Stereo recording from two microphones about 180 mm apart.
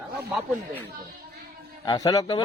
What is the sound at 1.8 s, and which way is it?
Speech, 20° left (ahead or behind).